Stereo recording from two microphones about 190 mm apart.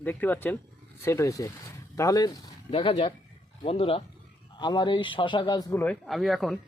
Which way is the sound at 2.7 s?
30° left (ahead or behind).